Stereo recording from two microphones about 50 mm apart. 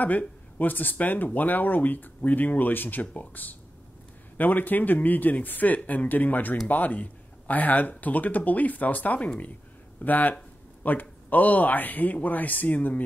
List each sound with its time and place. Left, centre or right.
0.0 s speech: left